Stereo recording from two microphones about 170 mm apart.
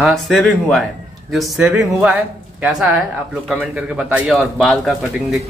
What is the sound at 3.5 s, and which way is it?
Speech, 5° right (ahead or behind).